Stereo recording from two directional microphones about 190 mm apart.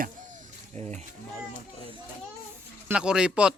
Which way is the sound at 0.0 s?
40° right (ahead or behind).